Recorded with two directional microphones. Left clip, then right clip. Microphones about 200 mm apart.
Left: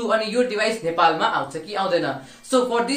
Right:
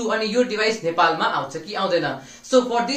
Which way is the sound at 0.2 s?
5° left (ahead or behind).